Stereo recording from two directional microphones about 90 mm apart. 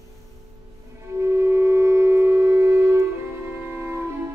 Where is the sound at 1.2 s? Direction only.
30° right (ahead or behind).